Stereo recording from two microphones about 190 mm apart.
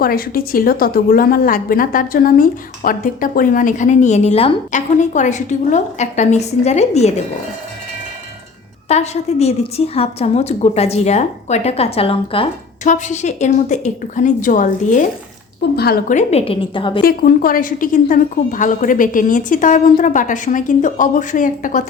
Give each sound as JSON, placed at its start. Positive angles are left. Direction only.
{"t": 0.0, "sound": "a woman's voice", "side_deg": 50}
{"t": 8.9, "sound": "a woman's voice", "side_deg": 35}
{"t": 15.7, "sound": "speech", "side_deg": 55}
{"t": 16.1, "sound": "a woman's voice", "side_deg": 30}
{"t": 17.0, "sound": "a woman's voice", "side_deg": 50}